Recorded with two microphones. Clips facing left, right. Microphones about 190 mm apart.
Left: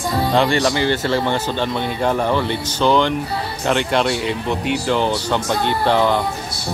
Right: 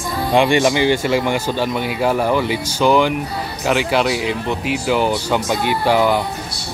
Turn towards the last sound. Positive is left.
turn(degrees=-10)  # may be behind; listen again after turning